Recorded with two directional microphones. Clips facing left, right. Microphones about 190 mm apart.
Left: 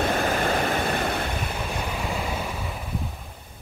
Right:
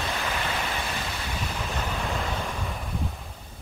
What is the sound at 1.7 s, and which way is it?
Waves, 10° left (ahead or behind).